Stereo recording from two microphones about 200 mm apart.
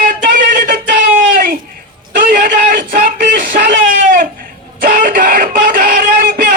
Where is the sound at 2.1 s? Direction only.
45° right (ahead or behind).